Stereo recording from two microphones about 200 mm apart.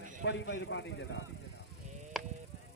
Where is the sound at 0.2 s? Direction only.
60° left (ahead or behind).